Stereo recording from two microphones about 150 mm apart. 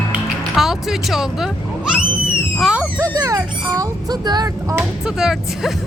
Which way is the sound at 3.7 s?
25° right (ahead or behind).